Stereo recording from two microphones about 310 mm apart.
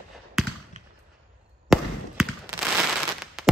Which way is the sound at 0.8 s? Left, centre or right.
Right.